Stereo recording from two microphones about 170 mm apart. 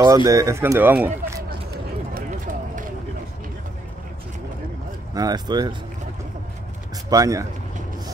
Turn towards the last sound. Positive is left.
turn(degrees=-20)  # may be behind; listen again after turning